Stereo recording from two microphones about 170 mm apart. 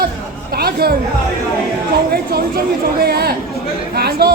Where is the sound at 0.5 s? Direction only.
65° right (ahead or behind).